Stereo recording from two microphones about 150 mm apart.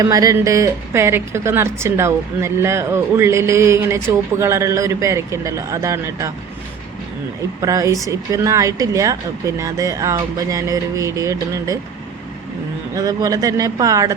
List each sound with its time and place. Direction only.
0.0 s speech: 25° right (ahead or behind)
7.6 s speech: 20° right (ahead or behind)
12.9 s speech: 25° right (ahead or behind)